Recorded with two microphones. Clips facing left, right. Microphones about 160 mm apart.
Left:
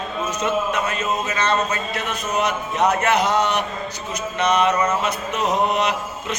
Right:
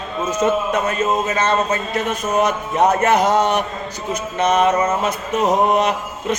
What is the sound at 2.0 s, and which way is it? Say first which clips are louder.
Music: right 4 dB; 45° right (ahead or behind).